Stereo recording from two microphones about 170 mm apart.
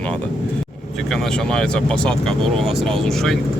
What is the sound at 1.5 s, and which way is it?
Speech, 5° left (ahead or behind).